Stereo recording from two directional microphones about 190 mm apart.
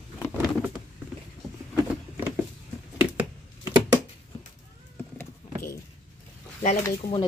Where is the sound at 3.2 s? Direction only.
15° right (ahead or behind).